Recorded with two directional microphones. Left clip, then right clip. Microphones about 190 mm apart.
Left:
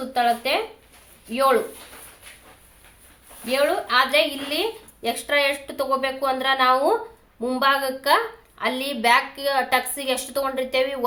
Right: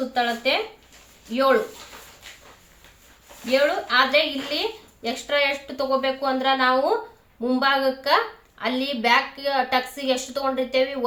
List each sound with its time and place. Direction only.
0.1 s a woman's voice: 35° left (ahead or behind)
3.5 s a woman's voice: 35° left (ahead or behind)